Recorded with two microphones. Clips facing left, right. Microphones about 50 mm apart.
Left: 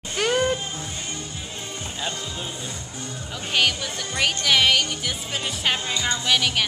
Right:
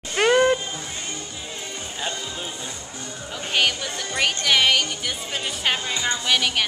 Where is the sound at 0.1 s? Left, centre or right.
Right.